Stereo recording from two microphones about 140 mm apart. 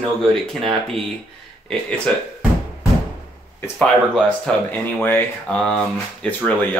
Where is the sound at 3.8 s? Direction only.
5° left (ahead or behind).